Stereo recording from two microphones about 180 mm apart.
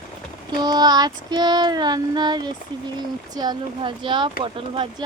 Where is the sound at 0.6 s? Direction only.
20° right (ahead or behind).